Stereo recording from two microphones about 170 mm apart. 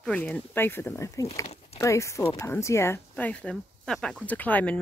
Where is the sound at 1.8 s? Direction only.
15° left (ahead or behind).